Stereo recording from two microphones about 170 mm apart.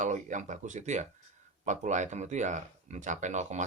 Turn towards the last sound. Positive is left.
turn(degrees=-45)  # may be behind; listen again after turning